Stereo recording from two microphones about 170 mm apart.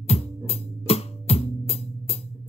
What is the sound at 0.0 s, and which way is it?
Music, 35° left (ahead or behind).